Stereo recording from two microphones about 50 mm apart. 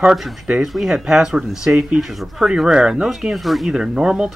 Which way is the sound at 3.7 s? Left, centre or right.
Centre.